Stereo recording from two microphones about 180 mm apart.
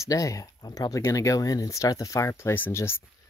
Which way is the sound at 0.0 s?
20° left (ahead or behind).